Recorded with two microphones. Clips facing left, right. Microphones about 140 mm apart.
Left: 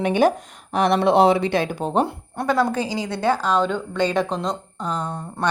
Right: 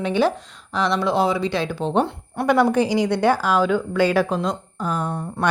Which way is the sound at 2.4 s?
15° right (ahead or behind).